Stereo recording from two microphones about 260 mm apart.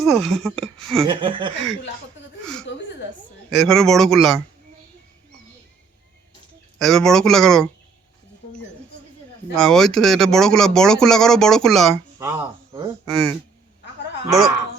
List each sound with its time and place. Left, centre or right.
0.0 s speech: centre
1.0 s speech: centre
3.5 s speech: centre
6.7 s speech: centre
9.6 s speech: centre
12.2 s speech: centre
14.3 s speech: centre